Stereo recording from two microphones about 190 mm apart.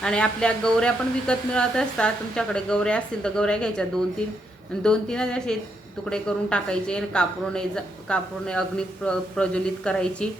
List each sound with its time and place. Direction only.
0.0 s speech: 5° left (ahead or behind)